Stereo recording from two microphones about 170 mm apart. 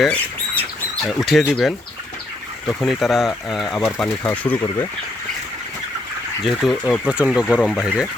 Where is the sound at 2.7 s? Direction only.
Centre (ahead or behind).